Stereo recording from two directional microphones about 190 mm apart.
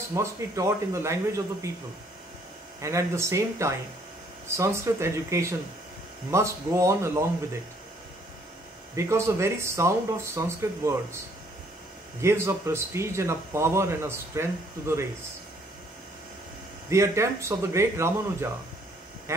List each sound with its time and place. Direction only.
0.1 s speech: 15° right (ahead or behind)
2.8 s speech: 15° right (ahead or behind)
8.9 s speech: 15° right (ahead or behind)
12.2 s speech: 15° right (ahead or behind)
16.9 s speech: 15° right (ahead or behind)